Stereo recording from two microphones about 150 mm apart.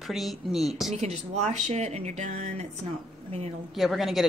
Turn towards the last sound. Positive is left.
turn(degrees=0)  # may be behind; listen again after turning